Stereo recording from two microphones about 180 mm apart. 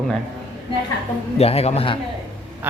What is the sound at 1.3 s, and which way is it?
Speech, 35° left (ahead or behind).